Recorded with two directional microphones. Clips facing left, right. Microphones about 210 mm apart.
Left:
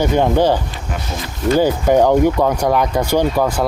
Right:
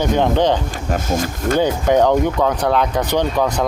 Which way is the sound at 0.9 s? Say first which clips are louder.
Right 8 dB; 45° right (ahead or behind).